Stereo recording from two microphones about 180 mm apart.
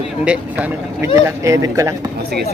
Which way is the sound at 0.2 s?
5° right (ahead or behind).